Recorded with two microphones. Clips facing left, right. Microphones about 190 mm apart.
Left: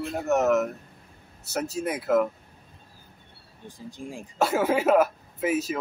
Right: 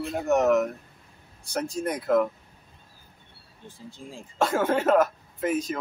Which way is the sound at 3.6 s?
15° left (ahead or behind).